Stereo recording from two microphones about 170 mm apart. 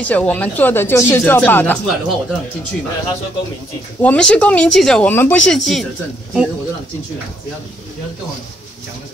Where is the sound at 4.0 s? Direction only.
5° left (ahead or behind).